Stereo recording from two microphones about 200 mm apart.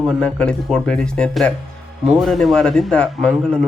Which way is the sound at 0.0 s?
5° left (ahead or behind).